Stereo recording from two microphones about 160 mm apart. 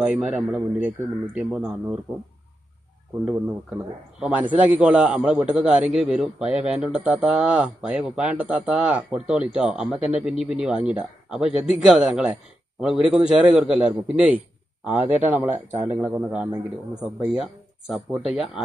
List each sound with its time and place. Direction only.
0.0 s a man's voice: 10° right (ahead or behind)
3.3 s a man's voice: 5° right (ahead or behind)
15.7 s speech: 45° right (ahead or behind)
16.0 s a man's voice: 10° right (ahead or behind)